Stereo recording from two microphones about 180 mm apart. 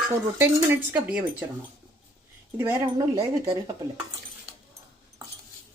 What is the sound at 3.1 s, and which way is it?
Speech, 30° right (ahead or behind).